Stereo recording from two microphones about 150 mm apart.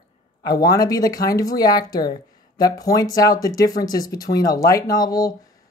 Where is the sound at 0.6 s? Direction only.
25° left (ahead or behind).